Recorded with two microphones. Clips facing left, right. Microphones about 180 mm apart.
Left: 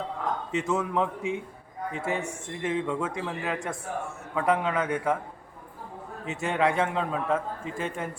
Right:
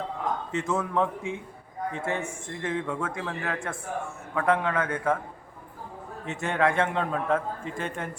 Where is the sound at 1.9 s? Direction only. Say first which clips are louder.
Left 1 dB; 5° left (ahead or behind).